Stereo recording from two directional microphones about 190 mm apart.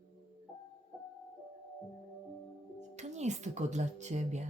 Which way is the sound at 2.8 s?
35° right (ahead or behind).